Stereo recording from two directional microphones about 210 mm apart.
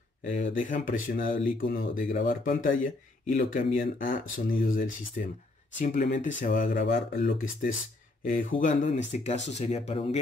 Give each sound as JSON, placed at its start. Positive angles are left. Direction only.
{"t": 0.3, "sound": "speech", "side_deg": 40}